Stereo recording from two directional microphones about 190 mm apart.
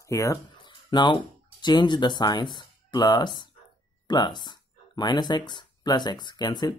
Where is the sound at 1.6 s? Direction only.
25° left (ahead or behind).